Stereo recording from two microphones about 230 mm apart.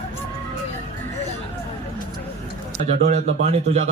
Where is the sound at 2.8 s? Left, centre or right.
Right.